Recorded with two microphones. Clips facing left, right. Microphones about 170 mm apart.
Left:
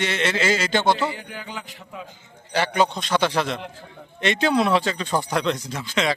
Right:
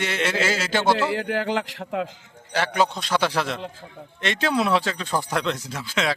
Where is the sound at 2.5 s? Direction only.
Centre (ahead or behind).